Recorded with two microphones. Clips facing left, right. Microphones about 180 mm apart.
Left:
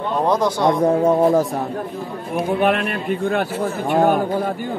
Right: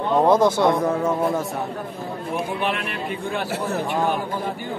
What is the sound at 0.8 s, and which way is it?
Speech, 30° left (ahead or behind).